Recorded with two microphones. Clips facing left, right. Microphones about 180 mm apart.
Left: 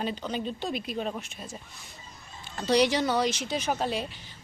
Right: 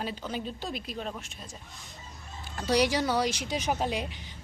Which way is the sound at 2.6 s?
10° right (ahead or behind).